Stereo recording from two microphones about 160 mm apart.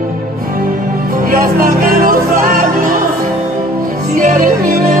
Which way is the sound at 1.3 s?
60° right (ahead or behind).